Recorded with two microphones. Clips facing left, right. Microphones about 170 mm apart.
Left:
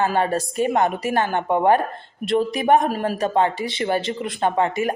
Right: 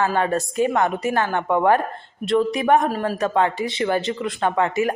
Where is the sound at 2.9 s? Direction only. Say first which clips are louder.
Even; 15° left (ahead or behind).